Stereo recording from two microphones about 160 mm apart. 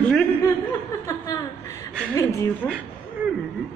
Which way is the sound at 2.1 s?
15° left (ahead or behind).